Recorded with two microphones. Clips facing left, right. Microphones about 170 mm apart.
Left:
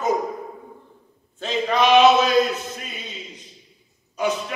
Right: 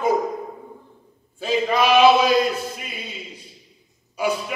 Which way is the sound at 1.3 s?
10° right (ahead or behind).